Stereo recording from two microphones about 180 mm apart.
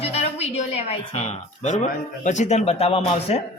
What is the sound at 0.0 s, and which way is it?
A woman's voice, 35° left (ahead or behind).